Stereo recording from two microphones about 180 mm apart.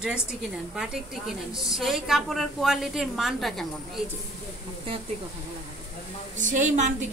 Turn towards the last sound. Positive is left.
turn(degrees=-45)  # may be behind; listen again after turning